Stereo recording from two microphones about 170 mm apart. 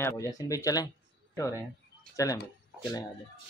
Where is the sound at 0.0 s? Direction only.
20° left (ahead or behind).